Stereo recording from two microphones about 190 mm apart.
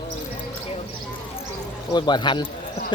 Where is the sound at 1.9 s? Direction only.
25° left (ahead or behind).